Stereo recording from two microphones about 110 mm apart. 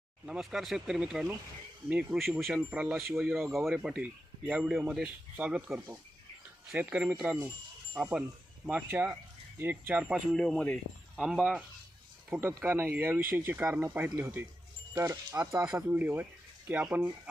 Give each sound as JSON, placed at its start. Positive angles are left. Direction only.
{"t": 0.3, "sound": "speech", "side_deg": 0}
{"t": 10.3, "sound": "speech", "side_deg": 5}
{"t": 11.2, "sound": "speech", "side_deg": -5}
{"t": 12.3, "sound": "speech", "side_deg": -20}